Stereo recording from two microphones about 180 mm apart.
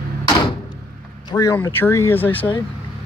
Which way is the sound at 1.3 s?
20° left (ahead or behind).